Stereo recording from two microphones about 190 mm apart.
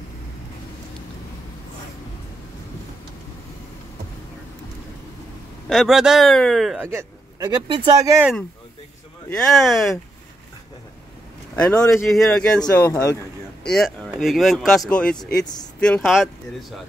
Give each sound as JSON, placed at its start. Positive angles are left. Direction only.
{"t": 5.7, "sound": "speech", "side_deg": 0}
{"t": 6.9, "sound": "speech", "side_deg": -15}
{"t": 9.3, "sound": "speech", "side_deg": 0}
{"t": 11.5, "sound": "speech", "side_deg": 5}
{"t": 13.8, "sound": "speech", "side_deg": 0}